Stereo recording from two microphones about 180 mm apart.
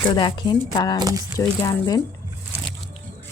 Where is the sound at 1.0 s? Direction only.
20° right (ahead or behind).